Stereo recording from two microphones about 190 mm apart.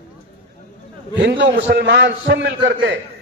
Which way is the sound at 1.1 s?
70° right (ahead or behind).